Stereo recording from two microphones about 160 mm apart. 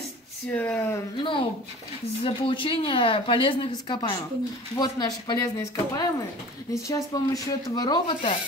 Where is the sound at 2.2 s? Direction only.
35° left (ahead or behind).